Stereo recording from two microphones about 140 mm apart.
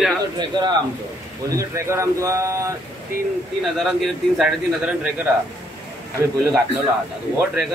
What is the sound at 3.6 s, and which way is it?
Speech, centre (ahead or behind).